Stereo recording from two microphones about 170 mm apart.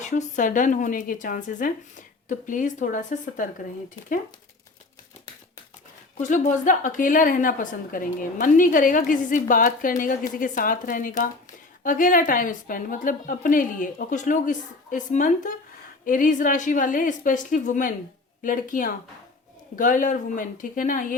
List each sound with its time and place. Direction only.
0.0 s a woman's voice: 45° left (ahead or behind)
6.1 s a woman's voice: 45° left (ahead or behind)